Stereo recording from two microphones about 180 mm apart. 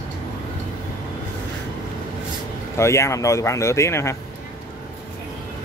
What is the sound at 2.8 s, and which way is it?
Speech, 15° left (ahead or behind).